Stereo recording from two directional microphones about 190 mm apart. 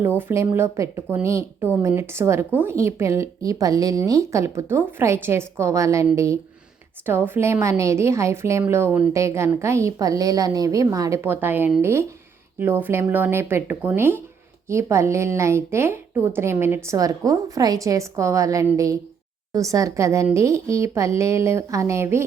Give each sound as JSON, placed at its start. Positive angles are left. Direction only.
{"t": 0.2, "sound": "speech", "side_deg": -10}